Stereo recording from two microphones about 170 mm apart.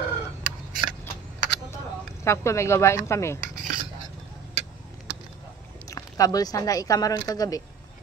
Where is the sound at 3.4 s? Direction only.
50° right (ahead or behind).